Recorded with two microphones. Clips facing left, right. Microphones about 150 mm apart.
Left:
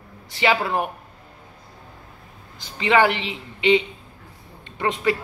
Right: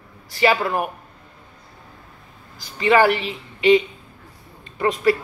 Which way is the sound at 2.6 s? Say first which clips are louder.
Right 2 dB; 20° left (ahead or behind).